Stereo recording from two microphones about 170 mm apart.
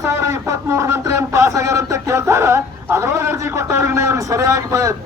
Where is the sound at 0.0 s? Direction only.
15° right (ahead or behind).